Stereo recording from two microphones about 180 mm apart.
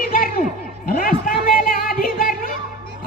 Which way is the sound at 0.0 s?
55° left (ahead or behind).